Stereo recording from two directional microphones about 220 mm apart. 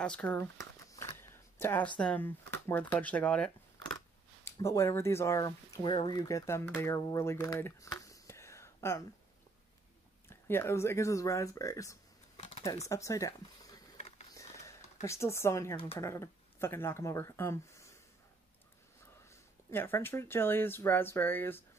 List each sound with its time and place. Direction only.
0.0 s speech: 5° left (ahead or behind)
0.9 s a sound: 10° left (ahead or behind)
2.0 s speech: 5° left (ahead or behind)
10.3 s speech: 10° left (ahead or behind)
12.4 s computer keyboard: 30° left (ahead or behind)
12.6 s speech: 15° left (ahead or behind)
13.9 s a sound: 30° left (ahead or behind)
15.0 s speech: 10° left (ahead or behind)
15.7 s speech: 25° left (ahead or behind)
16.0 s speech: 15° left (ahead or behind)
19.7 s speech: 10° left (ahead or behind)